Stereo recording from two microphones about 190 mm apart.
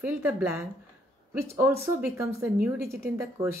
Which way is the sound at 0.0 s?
10° right (ahead or behind).